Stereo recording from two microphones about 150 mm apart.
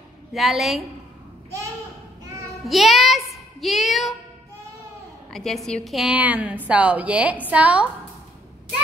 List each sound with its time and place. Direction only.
0.3 s a woman's voice: centre (ahead or behind)
2.6 s speech: centre (ahead or behind)
5.3 s a woman's voice: centre (ahead or behind)